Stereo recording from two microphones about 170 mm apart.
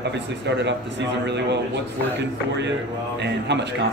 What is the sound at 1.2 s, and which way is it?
Speech, 90° right.